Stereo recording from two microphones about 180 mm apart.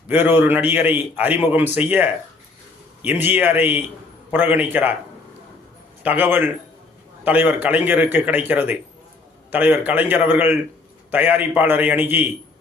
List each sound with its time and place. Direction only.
0.1 s a man's voice: 10° right (ahead or behind)
6.0 s a man's voice: 10° right (ahead or behind)